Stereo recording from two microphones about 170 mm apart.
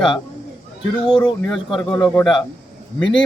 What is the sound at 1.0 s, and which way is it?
Speech, 5° left (ahead or behind).